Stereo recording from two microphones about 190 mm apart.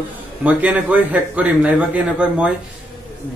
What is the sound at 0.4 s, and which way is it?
A man's voice, 10° right (ahead or behind).